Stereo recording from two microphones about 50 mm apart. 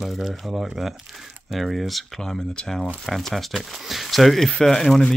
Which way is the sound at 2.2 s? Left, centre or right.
Centre.